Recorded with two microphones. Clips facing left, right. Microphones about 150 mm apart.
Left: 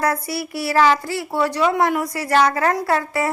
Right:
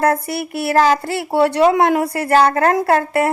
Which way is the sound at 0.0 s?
55° right (ahead or behind).